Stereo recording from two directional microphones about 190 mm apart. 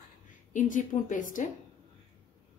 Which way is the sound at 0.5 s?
45° left (ahead or behind).